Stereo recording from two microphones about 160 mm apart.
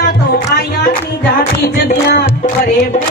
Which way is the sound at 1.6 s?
85° left.